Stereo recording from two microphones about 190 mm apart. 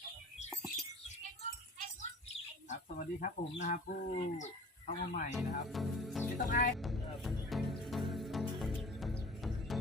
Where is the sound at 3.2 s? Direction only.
40° left (ahead or behind).